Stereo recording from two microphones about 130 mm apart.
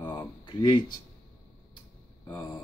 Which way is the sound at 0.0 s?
25° left (ahead or behind).